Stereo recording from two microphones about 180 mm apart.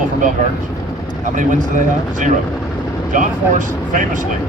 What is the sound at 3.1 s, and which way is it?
Speech, 45° right (ahead or behind).